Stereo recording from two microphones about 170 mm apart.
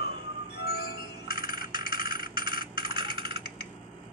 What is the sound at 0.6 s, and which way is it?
Music, 65° left (ahead or behind).